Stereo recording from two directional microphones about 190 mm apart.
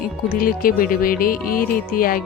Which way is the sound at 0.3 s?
50° left (ahead or behind).